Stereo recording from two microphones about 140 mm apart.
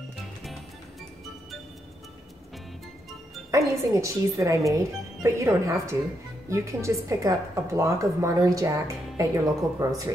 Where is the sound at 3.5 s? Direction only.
20° right (ahead or behind).